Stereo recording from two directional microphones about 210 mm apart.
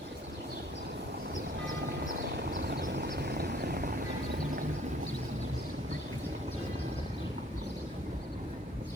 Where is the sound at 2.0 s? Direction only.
45° right (ahead or behind).